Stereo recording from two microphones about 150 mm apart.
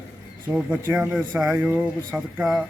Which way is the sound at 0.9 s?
10° right (ahead or behind).